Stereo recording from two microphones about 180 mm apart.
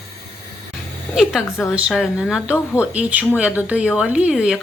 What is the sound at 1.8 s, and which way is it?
Speech, 5° right (ahead or behind).